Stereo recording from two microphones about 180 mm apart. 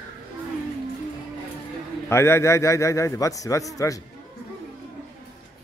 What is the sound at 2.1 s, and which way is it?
A man's voice, 15° left (ahead or behind).